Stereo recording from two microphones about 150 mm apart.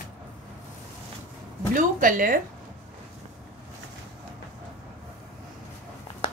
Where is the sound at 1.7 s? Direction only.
65° right (ahead or behind).